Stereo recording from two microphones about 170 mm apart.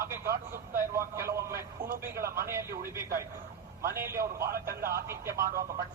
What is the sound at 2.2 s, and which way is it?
Speech, 60° right (ahead or behind).